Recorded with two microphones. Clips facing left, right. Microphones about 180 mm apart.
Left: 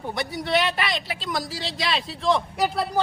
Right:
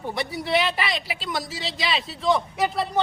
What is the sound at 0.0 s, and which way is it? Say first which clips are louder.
Speech: even; centre (ahead or behind).